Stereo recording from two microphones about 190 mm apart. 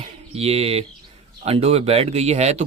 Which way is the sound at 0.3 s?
30° right (ahead or behind).